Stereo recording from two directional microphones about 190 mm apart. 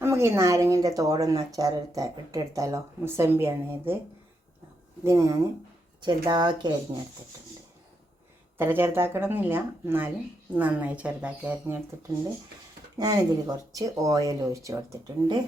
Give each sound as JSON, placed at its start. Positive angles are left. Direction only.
{"t": 0.0, "sound": "speech", "side_deg": -15}
{"t": 5.0, "sound": "speech", "side_deg": -15}
{"t": 8.5, "sound": "speech", "side_deg": -10}
{"t": 13.0, "sound": "speech", "side_deg": -20}